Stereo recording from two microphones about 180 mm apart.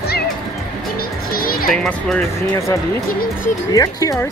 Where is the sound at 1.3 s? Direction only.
55° left (ahead or behind).